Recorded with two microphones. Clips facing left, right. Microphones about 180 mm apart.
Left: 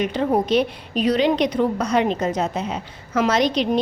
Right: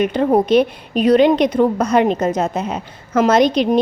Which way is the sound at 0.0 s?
55° right (ahead or behind).